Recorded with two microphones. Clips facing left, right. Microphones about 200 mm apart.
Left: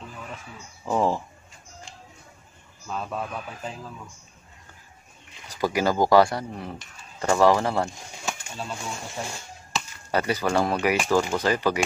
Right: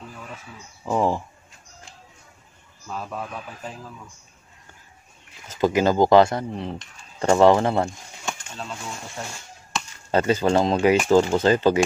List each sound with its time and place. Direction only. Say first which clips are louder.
0.8 s speech: right 1 dB; 10° right (ahead or behind)
2.9 s a man's voice: left 1 dB; 5° right (ahead or behind)
5.5 s speech: right 4 dB; 20° right (ahead or behind)
8.3 s a sound: even; 5° left (ahead or behind)
10.1 s speech: right 4 dB; 25° right (ahead or behind)